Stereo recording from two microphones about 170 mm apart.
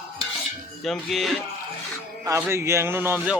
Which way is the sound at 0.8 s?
Centre (ahead or behind).